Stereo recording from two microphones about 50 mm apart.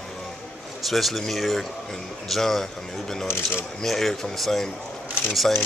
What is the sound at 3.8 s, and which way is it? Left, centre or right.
Speech, centre.